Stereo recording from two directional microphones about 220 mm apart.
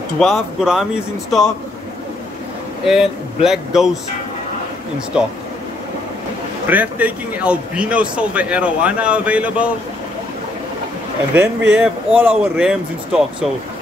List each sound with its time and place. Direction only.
0.2 s speech: centre (ahead or behind)
2.9 s speech: centre (ahead or behind)
6.7 s speech: 5° right (ahead or behind)
11.3 s speech: 5° right (ahead or behind)